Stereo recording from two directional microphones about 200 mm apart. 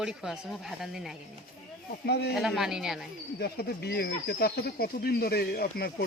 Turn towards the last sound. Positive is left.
turn(degrees=50)  # may be behind; listen again after turning